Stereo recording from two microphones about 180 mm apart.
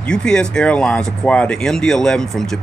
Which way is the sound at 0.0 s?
5° left (ahead or behind).